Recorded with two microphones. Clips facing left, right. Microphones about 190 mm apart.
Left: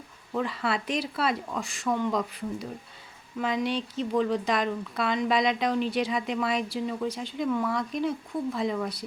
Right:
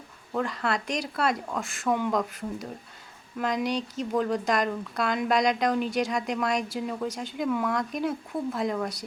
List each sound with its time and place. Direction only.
0.3 s a woman's voice: centre (ahead or behind)